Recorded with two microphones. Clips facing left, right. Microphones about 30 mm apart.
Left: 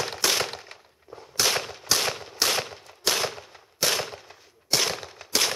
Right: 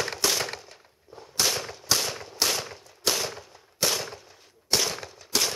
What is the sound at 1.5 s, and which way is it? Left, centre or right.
Gunshot, left.